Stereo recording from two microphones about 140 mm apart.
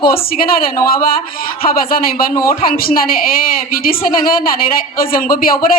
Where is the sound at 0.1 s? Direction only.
90° left.